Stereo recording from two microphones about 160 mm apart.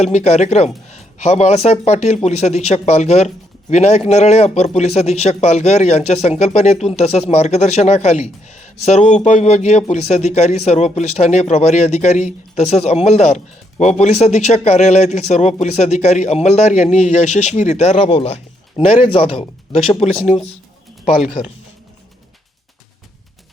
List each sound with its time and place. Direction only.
0.0 s speech: 45° left (ahead or behind)
21.0 s speech: 5° right (ahead or behind)